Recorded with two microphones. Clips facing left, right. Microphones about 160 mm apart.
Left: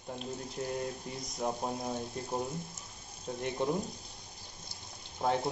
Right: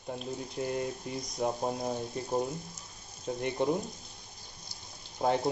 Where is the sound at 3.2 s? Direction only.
5° right (ahead or behind).